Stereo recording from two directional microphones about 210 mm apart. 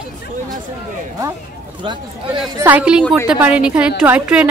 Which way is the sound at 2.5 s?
10° right (ahead or behind).